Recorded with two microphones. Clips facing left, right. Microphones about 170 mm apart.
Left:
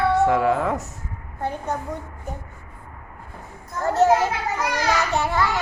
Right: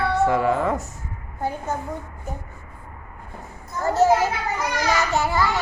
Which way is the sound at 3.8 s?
5° right (ahead or behind).